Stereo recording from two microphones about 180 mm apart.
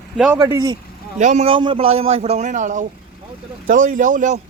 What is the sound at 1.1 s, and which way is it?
A man's voice, 40° right (ahead or behind).